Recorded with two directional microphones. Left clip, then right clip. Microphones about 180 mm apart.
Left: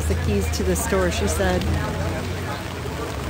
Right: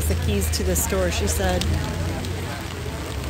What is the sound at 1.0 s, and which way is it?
Speech, 20° left (ahead or behind).